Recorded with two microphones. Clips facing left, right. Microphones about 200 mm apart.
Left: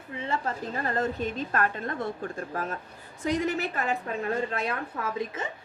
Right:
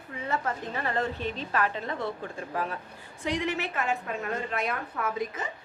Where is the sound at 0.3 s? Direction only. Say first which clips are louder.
Even; 35° left (ahead or behind).